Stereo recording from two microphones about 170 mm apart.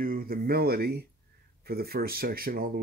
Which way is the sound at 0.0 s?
60° right (ahead or behind).